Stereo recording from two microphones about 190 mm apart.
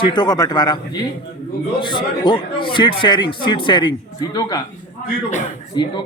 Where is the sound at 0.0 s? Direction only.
25° left (ahead or behind).